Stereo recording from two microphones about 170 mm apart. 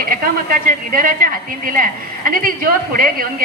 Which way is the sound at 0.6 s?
55° right (ahead or behind).